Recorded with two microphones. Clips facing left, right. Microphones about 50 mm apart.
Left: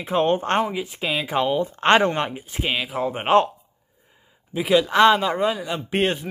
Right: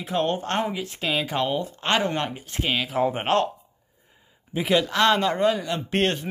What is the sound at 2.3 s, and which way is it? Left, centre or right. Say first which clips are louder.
Speech: left 1 dB; centre.